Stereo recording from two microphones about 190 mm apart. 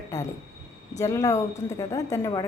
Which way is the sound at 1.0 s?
15° left (ahead or behind).